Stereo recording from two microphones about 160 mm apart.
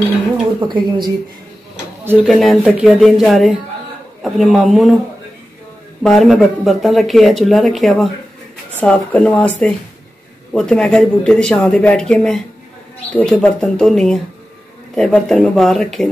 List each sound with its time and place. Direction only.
0.6 s a woman's voice: 30° right (ahead or behind)
2.0 s speech: 5° right (ahead or behind)
6.0 s speech: centre (ahead or behind)